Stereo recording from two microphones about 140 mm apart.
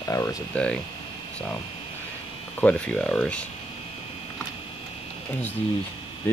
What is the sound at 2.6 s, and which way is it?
Speech, 10° left (ahead or behind).